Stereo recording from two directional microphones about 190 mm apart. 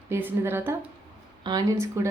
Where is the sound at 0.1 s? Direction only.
10° right (ahead or behind).